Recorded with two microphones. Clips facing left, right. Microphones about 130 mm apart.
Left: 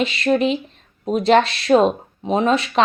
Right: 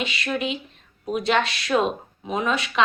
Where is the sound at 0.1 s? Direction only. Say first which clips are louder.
Left 9 dB; 35° left (ahead or behind).